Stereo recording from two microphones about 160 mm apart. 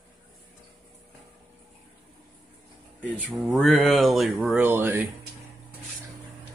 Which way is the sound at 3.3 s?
5° right (ahead or behind).